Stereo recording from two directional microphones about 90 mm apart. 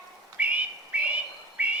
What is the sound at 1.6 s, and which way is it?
Music, 15° right (ahead or behind).